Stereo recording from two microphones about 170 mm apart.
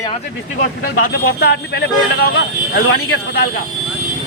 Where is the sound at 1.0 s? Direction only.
75° left (ahead or behind).